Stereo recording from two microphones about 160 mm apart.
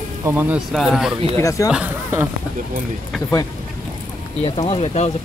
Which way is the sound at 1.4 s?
20° left (ahead or behind).